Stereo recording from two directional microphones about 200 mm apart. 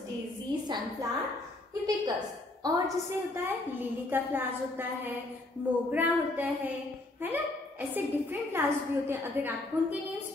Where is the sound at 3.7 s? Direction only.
10° right (ahead or behind).